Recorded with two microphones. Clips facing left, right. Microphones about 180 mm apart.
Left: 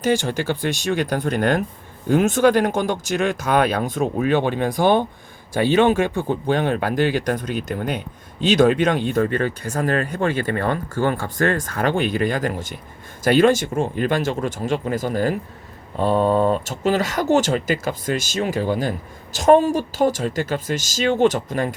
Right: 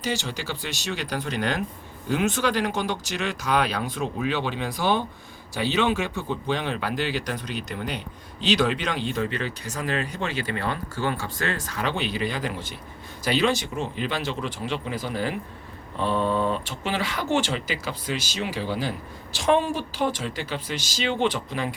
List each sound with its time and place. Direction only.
0.0 s speech: 50° left (ahead or behind)